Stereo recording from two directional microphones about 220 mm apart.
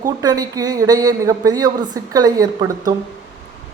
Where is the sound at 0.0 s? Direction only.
15° right (ahead or behind).